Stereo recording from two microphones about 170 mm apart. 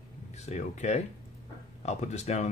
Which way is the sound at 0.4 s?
45° left (ahead or behind).